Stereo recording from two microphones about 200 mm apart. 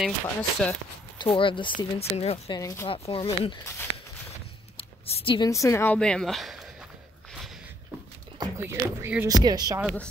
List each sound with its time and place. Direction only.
0.0 s speech: 5° left (ahead or behind)
1.1 s speech: 25° left (ahead or behind)
2.4 s speech: 15° left (ahead or behind)
2.9 s speech: 25° left (ahead or behind)
4.7 s speech: 30° left (ahead or behind); by 6.7 s centre (ahead or behind)
8.4 s speech: 15° right (ahead or behind)